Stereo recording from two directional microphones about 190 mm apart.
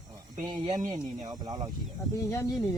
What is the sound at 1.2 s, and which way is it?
Speech, 20° right (ahead or behind).